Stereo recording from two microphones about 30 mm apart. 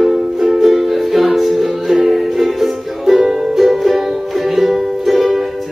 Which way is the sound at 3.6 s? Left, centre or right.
Centre.